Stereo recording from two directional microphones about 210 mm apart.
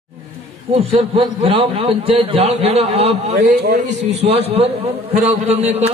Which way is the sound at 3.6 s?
50° right (ahead or behind).